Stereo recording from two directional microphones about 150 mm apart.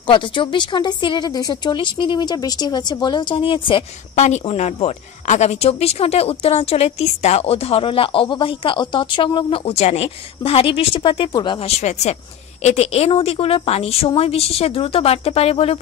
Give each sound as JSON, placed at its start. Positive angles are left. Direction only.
{"t": 0.0, "sound": "a woman's voice", "side_deg": 35}
{"t": 4.2, "sound": "a woman's voice", "side_deg": 50}
{"t": 11.8, "sound": "a woman's voice", "side_deg": 50}